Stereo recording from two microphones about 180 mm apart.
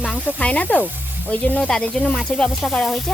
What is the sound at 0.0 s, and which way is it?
Snake, 5° left (ahead or behind).